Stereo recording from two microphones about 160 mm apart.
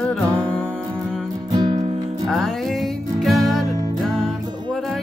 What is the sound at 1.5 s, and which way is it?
Music, 25° right (ahead or behind).